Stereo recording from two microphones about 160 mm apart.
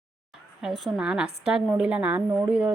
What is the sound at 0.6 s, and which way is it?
A woman's voice, centre (ahead or behind).